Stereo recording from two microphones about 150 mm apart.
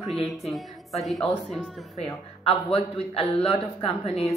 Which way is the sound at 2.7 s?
40° left (ahead or behind).